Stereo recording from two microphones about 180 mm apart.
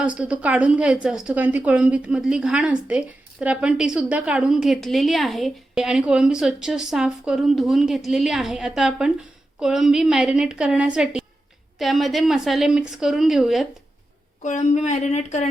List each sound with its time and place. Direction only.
0.0 s a woman's voice: 5° right (ahead or behind)
14.4 s speech: 40° left (ahead or behind)